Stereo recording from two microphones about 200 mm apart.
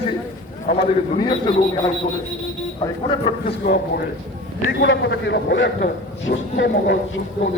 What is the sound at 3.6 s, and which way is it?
Speech, 50° left (ahead or behind).